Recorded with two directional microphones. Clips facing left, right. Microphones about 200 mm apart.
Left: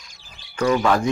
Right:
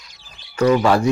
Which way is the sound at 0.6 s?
25° right (ahead or behind).